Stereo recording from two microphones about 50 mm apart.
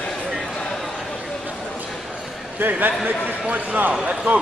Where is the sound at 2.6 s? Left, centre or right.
Right.